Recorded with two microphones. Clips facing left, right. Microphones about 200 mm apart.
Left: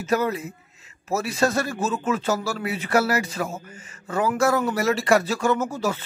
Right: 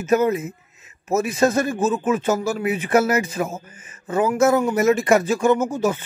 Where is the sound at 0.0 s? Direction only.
20° right (ahead or behind).